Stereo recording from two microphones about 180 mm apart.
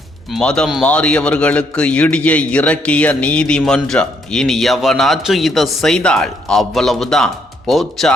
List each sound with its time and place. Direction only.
0.3 s a man's voice: 5° left (ahead or behind)